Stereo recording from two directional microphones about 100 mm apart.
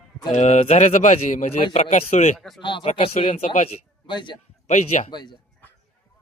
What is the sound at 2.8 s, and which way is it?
Speech, 90° left.